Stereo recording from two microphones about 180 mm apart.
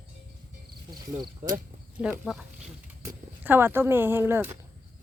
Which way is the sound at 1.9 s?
5° right (ahead or behind).